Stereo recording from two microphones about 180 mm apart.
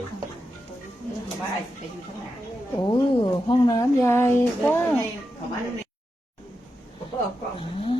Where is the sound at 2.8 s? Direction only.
25° left (ahead or behind).